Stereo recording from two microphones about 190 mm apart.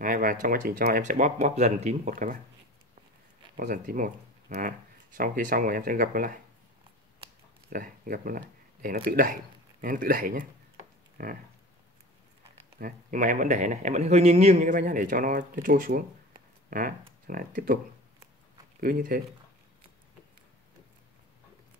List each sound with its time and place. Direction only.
0.0 s speech: 50° right (ahead or behind)
3.5 s speech: 45° right (ahead or behind)
7.7 s speech: 45° right (ahead or behind)
12.7 s speech: 45° right (ahead or behind)
18.8 s speech: 45° right (ahead or behind)